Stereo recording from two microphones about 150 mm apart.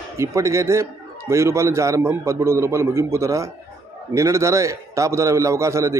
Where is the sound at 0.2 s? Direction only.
20° right (ahead or behind).